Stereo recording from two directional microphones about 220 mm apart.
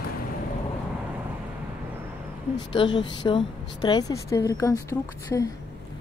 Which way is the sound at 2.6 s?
20° left (ahead or behind).